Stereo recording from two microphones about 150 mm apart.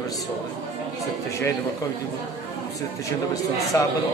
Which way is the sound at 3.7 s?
20° left (ahead or behind).